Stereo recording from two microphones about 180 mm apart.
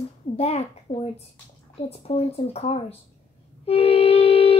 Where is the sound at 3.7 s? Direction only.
35° left (ahead or behind).